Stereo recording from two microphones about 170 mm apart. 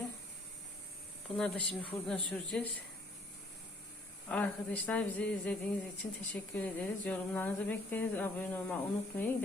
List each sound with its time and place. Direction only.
1.4 s speech: 5° left (ahead or behind)
4.3 s speech: 5° left (ahead or behind)